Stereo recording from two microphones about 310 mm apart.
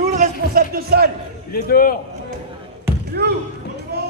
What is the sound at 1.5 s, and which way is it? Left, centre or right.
Speech, left.